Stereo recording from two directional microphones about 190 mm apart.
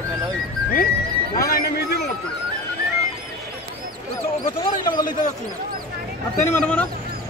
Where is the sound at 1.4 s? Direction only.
55° left (ahead or behind).